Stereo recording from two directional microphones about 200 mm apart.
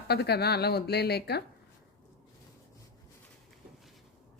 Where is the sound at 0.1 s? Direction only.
55° left (ahead or behind).